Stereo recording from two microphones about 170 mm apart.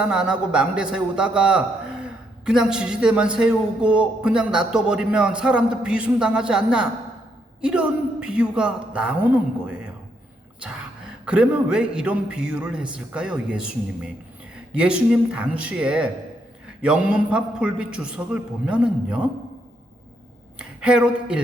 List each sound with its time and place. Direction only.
0.0 s a man's voice: 5° right (ahead or behind)
20.6 s speech: 5° right (ahead or behind)